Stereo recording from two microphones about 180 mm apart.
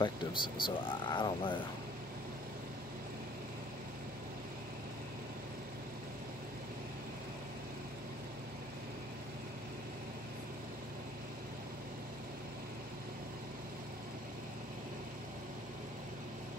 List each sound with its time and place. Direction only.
0.0 s speech: 25° left (ahead or behind)